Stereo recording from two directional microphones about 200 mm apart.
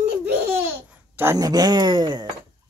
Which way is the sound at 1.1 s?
15° right (ahead or behind).